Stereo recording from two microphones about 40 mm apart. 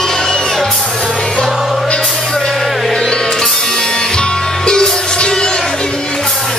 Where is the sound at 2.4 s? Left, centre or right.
Centre.